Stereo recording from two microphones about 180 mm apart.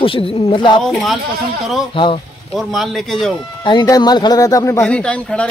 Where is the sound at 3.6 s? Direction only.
25° left (ahead or behind); by 5.5 s 5° left (ahead or behind).